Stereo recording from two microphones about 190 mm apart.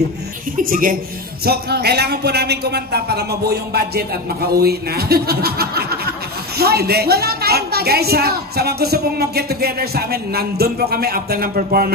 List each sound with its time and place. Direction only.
0.6 s a man's voice: 45° right (ahead or behind)